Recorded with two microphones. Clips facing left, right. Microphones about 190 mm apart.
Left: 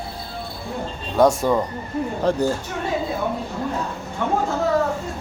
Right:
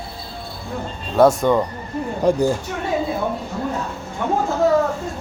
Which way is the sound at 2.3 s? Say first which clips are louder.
Right 4 dB; 10° right (ahead or behind).